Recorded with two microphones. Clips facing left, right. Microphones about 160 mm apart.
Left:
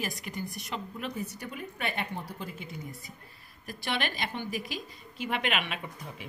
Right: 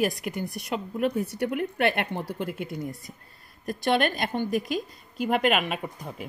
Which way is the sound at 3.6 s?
45° right (ahead or behind).